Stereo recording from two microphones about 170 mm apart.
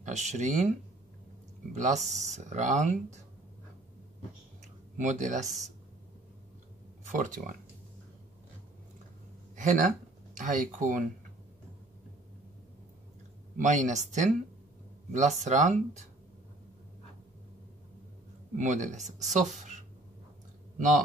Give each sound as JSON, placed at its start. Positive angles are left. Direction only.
{"t": 0.0, "sound": "speech", "side_deg": -45}
{"t": 4.9, "sound": "speech", "side_deg": -45}
{"t": 7.1, "sound": "speech", "side_deg": -50}
{"t": 10.3, "sound": "speech", "side_deg": -50}
{"t": 13.6, "sound": "speech", "side_deg": -45}
{"t": 18.6, "sound": "speech", "side_deg": -45}